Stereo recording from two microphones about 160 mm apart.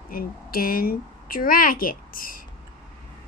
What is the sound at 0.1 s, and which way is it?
Speech, 65° left (ahead or behind).